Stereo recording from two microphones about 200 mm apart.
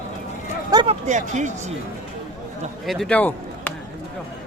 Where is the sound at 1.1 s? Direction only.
35° right (ahead or behind).